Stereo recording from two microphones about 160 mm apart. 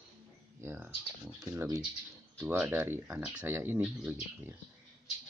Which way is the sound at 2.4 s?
10° right (ahead or behind).